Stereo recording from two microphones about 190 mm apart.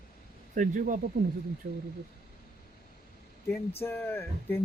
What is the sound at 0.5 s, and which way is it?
Speech, 45° right (ahead or behind).